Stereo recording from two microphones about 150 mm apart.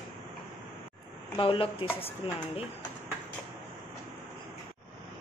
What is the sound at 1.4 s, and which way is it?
Speech, 35° left (ahead or behind).